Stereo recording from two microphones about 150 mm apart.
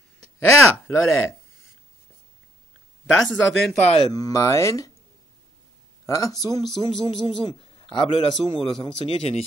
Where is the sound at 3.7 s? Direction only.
45° left (ahead or behind).